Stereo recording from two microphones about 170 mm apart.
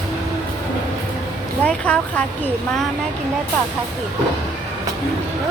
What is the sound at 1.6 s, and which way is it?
Speech, 5° left (ahead or behind).